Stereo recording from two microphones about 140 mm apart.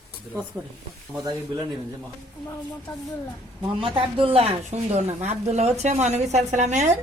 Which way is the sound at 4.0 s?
40° right (ahead or behind).